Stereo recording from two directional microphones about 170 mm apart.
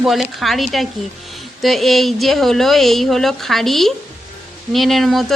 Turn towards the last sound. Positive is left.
turn(degrees=0)  # may be behind; listen again after turning